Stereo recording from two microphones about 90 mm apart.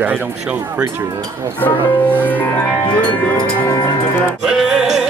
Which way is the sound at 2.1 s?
20° left (ahead or behind).